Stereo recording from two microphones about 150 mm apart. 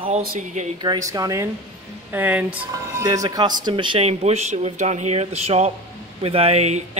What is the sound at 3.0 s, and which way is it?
Speech, 25° right (ahead or behind).